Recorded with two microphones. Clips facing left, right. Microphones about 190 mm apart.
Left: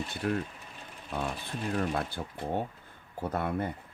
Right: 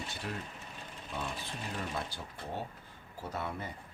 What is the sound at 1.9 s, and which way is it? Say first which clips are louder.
Speech: left 6 dB; 55° left (ahead or behind).